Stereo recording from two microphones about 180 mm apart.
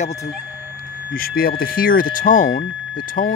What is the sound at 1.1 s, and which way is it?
Speech, 55° left (ahead or behind).